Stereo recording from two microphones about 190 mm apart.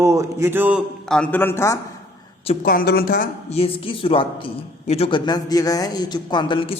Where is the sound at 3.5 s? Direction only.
30° left (ahead or behind).